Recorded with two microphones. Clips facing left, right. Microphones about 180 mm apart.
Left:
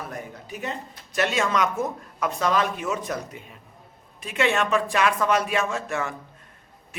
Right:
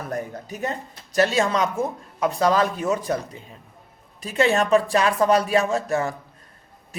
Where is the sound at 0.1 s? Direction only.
40° right (ahead or behind).